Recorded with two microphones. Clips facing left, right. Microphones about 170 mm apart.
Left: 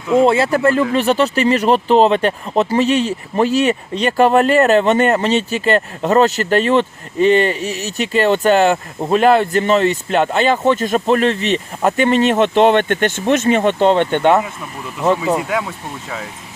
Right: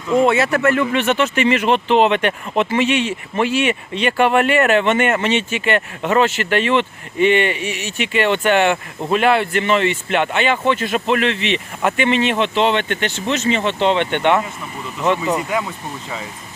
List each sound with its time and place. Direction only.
0.3 s speech: 30° left (ahead or behind)
15.4 s speech: centre (ahead or behind)